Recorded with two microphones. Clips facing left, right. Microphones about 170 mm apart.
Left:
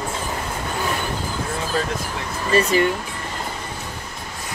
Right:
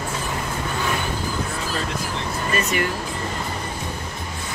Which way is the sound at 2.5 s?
30° left (ahead or behind).